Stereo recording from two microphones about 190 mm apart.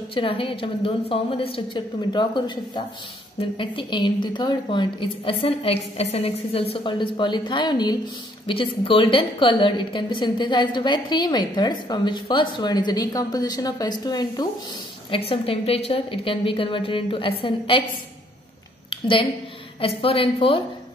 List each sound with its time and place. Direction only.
0.1 s a woman's voice: 25° left (ahead or behind)
18.9 s a sound: 25° left (ahead or behind)
19.8 s a woman's voice: 30° left (ahead or behind)